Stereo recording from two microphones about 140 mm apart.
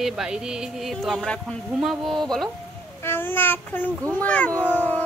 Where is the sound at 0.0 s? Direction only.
5° right (ahead or behind).